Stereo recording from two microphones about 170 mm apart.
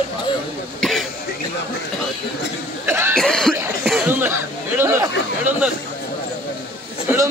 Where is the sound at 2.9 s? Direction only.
15° right (ahead or behind).